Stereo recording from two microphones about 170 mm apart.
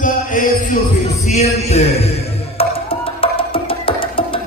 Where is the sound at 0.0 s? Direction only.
50° left (ahead or behind).